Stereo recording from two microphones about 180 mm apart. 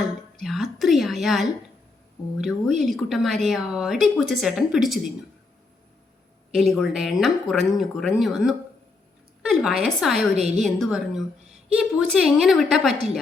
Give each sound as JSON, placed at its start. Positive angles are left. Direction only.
{"t": 0.4, "sound": "a woman's voice", "side_deg": 0}
{"t": 6.5, "sound": "a woman's voice", "side_deg": 0}
{"t": 10.2, "sound": "a woman's voice", "side_deg": -35}
{"t": 10.6, "sound": "a woman's voice", "side_deg": 0}